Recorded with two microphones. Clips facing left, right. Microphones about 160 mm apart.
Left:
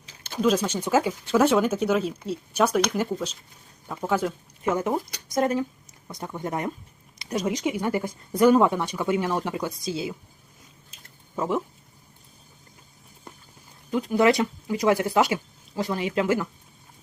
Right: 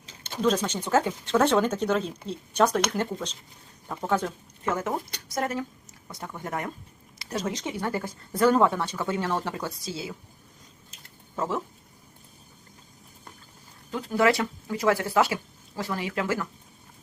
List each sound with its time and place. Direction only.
0.4 s speech: 10° left (ahead or behind)
11.3 s speech: 15° left (ahead or behind)
13.9 s speech: 15° left (ahead or behind)